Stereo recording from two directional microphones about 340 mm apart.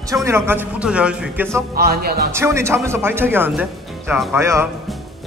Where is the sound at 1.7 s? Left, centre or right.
Right.